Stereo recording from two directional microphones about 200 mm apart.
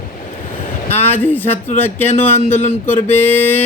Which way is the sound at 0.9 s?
10° left (ahead or behind).